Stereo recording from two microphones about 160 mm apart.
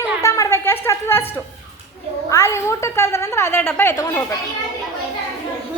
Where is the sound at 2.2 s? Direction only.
20° left (ahead or behind).